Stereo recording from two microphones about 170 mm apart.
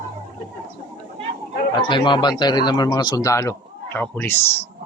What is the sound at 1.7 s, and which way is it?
Speech, 30° left (ahead or behind).